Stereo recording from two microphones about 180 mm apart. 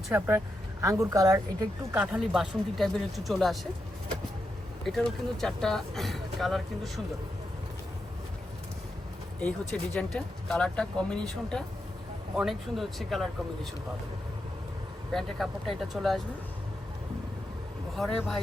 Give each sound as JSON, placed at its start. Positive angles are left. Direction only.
{"t": 0.1, "sound": "speech", "side_deg": -10}
{"t": 2.0, "sound": "speech", "side_deg": -5}
{"t": 4.9, "sound": "speech", "side_deg": 0}
{"t": 9.4, "sound": "speech", "side_deg": 5}
{"t": 15.1, "sound": "speech", "side_deg": 0}
{"t": 18.0, "sound": "speech", "side_deg": 0}